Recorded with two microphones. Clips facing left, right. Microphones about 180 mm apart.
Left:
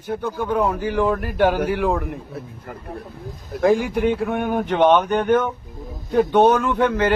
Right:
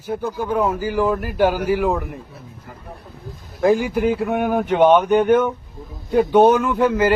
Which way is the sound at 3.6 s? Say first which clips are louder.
Right 1 dB; centre (ahead or behind).